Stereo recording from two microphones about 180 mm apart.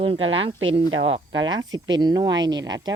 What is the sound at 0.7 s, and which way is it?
Speech, 30° right (ahead or behind).